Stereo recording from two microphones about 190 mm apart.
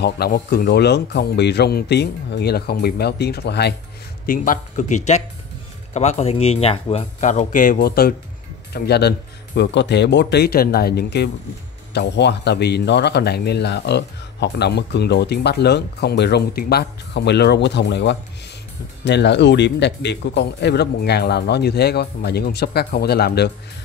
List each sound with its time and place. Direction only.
0.0 s speech: 55° left (ahead or behind)
4.3 s speech: 45° left (ahead or behind)